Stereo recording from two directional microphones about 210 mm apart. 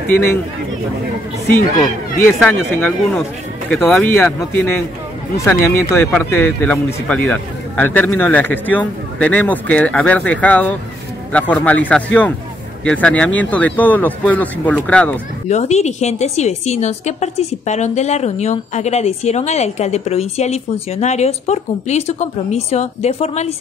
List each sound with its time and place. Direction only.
0.1 s a man's voice: 10° left (ahead or behind)
2.2 s a man's voice: 10° left (ahead or behind)
15.4 s a woman's voice: 30° left (ahead or behind)